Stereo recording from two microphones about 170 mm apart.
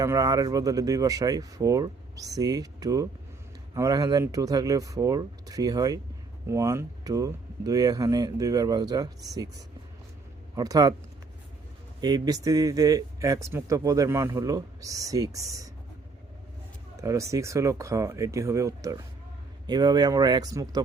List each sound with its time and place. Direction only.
0.0 s speech: 20° right (ahead or behind)
11.9 s speech: 25° right (ahead or behind)
17.0 s speech: 20° right (ahead or behind)